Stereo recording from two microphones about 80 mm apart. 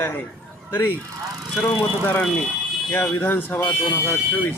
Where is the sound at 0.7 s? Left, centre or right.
Left.